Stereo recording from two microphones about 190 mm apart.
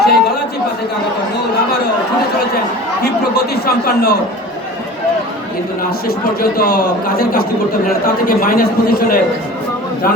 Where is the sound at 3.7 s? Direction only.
55° left (ahead or behind).